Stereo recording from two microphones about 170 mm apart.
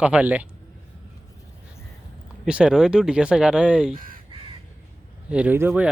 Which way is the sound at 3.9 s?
55° right (ahead or behind).